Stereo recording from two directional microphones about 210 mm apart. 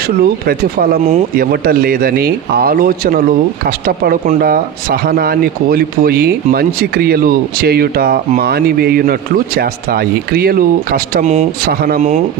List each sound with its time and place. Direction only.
0.4 s speech: 45° right (ahead or behind)
11.7 s speech: 45° right (ahead or behind)